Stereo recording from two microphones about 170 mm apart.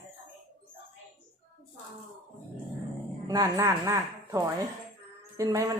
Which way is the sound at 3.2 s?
20° right (ahead or behind).